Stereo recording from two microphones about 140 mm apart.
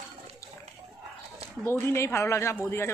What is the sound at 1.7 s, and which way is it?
A man's voice, 20° left (ahead or behind).